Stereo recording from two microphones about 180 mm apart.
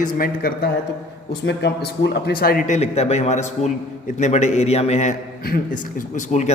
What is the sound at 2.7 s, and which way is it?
A man's voice, 35° left (ahead or behind).